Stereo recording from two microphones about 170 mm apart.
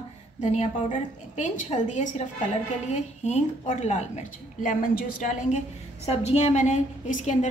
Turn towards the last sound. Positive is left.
turn(degrees=45)  # may be behind; listen again after turning